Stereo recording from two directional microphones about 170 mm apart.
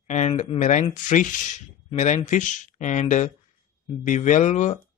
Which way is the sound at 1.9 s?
45° left (ahead or behind).